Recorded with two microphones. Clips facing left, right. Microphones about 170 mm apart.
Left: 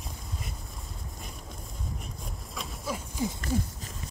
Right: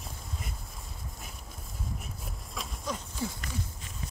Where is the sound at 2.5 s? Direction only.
10° left (ahead or behind).